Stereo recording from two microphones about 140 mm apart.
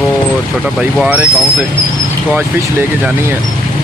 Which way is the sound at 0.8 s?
5° right (ahead or behind).